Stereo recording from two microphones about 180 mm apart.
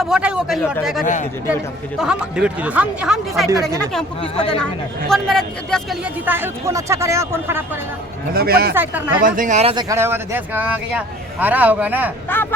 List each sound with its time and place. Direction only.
0.0 s speech: 5° right (ahead or behind)
1.0 s speech: 45° left (ahead or behind)
2.0 s speech: 5° right (ahead or behind)
3.5 s speech: 20° right (ahead or behind)
4.6 s speech: centre (ahead or behind)
6.2 s speech: 10° right (ahead or behind)
8.3 s speech: 60° right (ahead or behind)
8.7 s speech: 10° right (ahead or behind)
9.2 s speech: 50° right (ahead or behind)
9.7 s speech: 15° right (ahead or behind)
12.3 s speech: 10° left (ahead or behind)